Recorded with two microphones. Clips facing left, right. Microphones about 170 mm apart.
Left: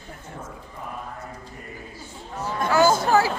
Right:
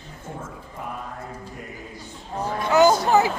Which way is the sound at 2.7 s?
20° right (ahead or behind).